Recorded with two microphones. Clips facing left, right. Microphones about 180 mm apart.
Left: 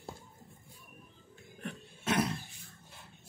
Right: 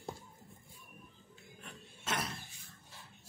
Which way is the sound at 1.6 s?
60° left (ahead or behind).